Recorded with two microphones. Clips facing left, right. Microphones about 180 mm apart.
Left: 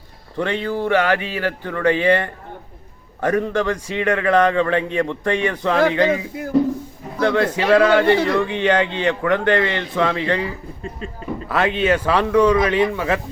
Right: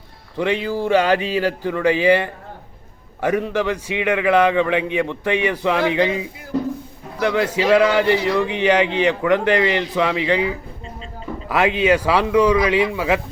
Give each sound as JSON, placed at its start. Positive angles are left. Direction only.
{"t": 0.6, "sound": "a man's voice", "side_deg": -10}